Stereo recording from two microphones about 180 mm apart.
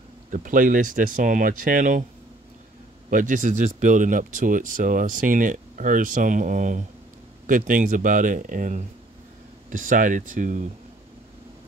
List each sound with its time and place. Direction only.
0.3 s speech: 45° right (ahead or behind)
3.1 s speech: 45° right (ahead or behind)